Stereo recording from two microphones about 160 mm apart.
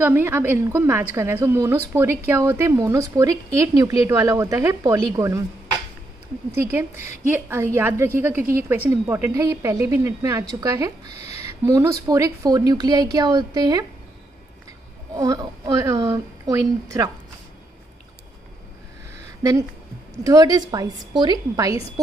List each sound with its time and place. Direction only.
0.0 s a woman's voice: 15° right (ahead or behind)
6.5 s a woman's voice: 15° right (ahead or behind)
11.1 s a sound: 40° left (ahead or behind)
11.6 s speech: 20° right (ahead or behind)
15.1 s speech: 25° right (ahead or behind)
20.2 s speech: 20° right (ahead or behind)